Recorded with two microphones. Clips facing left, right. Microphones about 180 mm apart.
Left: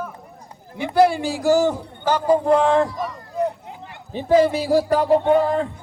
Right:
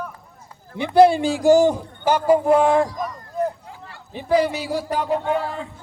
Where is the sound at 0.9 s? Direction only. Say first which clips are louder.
Right 3 dB; 20° right (ahead or behind).